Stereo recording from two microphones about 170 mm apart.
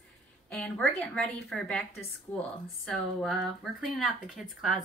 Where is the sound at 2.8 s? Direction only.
5° left (ahead or behind).